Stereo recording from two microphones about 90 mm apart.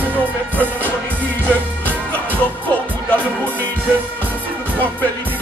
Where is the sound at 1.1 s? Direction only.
15° left (ahead or behind).